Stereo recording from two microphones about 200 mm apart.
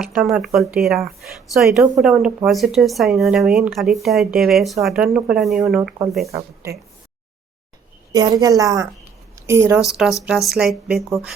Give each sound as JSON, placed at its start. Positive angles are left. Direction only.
{"t": 0.0, "sound": "speech", "side_deg": 0}
{"t": 6.2, "sound": "a woman's voice", "side_deg": -15}
{"t": 8.1, "sound": "a woman's voice", "side_deg": -20}
{"t": 9.8, "sound": "a woman's voice", "side_deg": 0}